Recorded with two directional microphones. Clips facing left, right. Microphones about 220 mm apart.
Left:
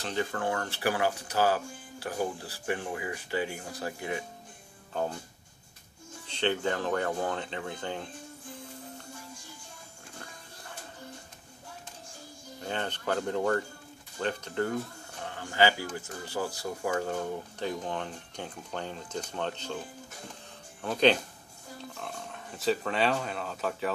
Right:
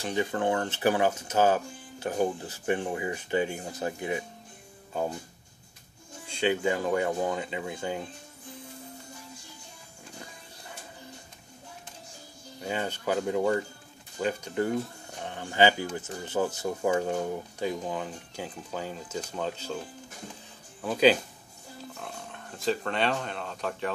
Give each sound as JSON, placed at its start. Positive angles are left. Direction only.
{"t": 0.0, "sound": "speech", "side_deg": -15}
{"t": 6.2, "sound": "speech", "side_deg": -10}
{"t": 12.6, "sound": "speech", "side_deg": -10}
{"t": 20.8, "sound": "speech", "side_deg": -5}